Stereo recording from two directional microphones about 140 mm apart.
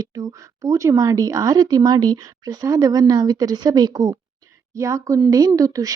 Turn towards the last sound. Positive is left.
turn(degrees=-25)  # may be behind; listen again after turning